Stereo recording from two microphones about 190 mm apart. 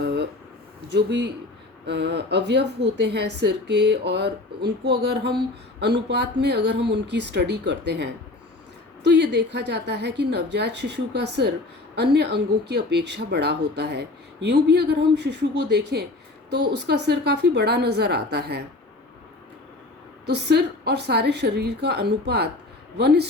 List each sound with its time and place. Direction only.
0.0 s a sound: 60° right (ahead or behind)
0.9 s speech: 65° right (ahead or behind)
20.2 s speech: 60° right (ahead or behind)